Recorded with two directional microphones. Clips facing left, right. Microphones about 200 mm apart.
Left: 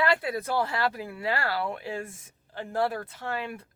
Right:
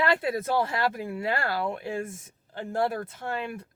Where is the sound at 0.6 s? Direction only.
20° right (ahead or behind).